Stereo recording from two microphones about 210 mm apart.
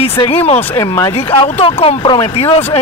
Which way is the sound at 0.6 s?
15° left (ahead or behind).